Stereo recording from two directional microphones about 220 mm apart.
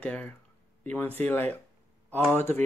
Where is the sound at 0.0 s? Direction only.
5° left (ahead or behind).